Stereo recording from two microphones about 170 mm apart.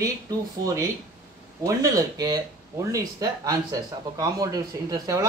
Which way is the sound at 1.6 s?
20° right (ahead or behind).